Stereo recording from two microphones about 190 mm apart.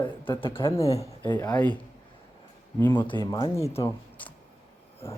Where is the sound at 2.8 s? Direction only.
10° left (ahead or behind).